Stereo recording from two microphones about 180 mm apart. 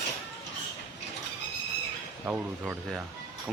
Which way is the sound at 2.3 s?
10° right (ahead or behind).